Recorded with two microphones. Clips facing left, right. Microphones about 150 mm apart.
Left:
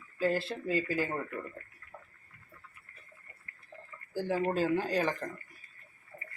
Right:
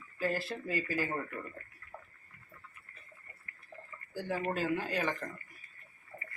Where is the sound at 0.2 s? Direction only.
25° left (ahead or behind).